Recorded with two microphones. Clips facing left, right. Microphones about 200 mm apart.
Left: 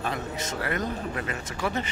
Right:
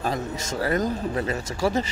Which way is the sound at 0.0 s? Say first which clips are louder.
Right 3 dB; 35° right (ahead or behind).